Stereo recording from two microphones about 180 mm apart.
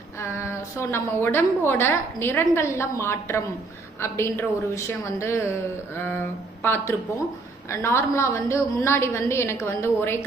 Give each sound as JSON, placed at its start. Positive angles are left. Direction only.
{"t": 0.2, "sound": "a woman's voice", "side_deg": 15}